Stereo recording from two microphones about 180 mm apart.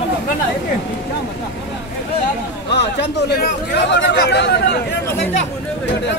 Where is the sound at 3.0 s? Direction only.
65° left (ahead or behind).